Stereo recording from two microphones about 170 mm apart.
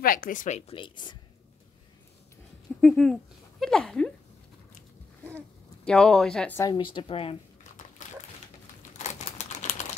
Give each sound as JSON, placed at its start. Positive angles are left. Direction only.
{"t": 0.0, "sound": "speech", "side_deg": 55}
{"t": 2.8, "sound": "speech", "side_deg": 5}
{"t": 5.9, "sound": "speech", "side_deg": 5}
{"t": 6.6, "sound": "a woman's voice", "side_deg": 30}
{"t": 8.0, "sound": "dog", "side_deg": 45}
{"t": 8.9, "sound": "typing", "side_deg": 40}